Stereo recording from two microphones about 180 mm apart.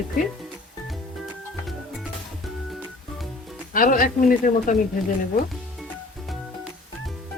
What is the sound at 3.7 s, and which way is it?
Speech, 50° left (ahead or behind).